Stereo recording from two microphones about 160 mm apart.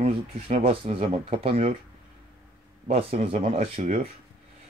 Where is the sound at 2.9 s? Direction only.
40° right (ahead or behind).